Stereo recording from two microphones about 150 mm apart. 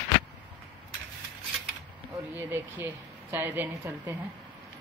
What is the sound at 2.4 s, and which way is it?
A woman's voice, 15° right (ahead or behind).